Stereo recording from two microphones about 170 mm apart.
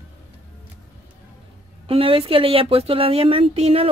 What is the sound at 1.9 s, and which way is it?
Speech, 35° right (ahead or behind).